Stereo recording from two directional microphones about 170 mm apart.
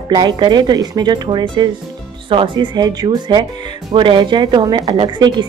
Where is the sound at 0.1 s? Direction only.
25° right (ahead or behind).